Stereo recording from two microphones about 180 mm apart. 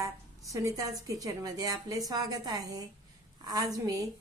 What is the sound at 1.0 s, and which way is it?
Speech, 20° right (ahead or behind).